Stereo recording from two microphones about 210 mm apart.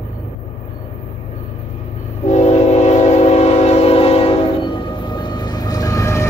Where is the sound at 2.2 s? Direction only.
35° left (ahead or behind); by 6.2 s 15° left (ahead or behind).